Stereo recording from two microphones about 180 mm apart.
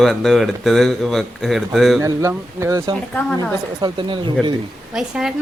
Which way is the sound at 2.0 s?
15° right (ahead or behind).